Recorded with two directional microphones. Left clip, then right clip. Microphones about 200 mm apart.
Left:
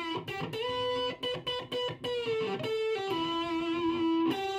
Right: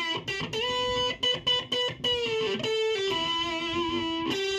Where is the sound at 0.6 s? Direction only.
35° right (ahead or behind).